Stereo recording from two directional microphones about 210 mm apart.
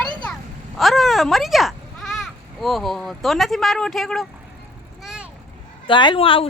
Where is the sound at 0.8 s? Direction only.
Centre (ahead or behind).